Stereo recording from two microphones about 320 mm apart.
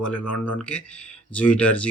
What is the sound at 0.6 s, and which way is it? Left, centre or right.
Speech, centre.